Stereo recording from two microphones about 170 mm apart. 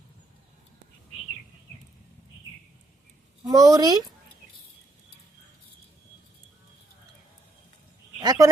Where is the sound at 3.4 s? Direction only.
20° right (ahead or behind).